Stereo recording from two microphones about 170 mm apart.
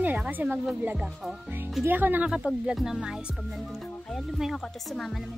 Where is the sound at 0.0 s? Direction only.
10° right (ahead or behind).